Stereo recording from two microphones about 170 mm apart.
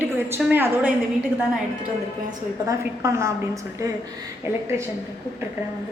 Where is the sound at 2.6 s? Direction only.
15° right (ahead or behind).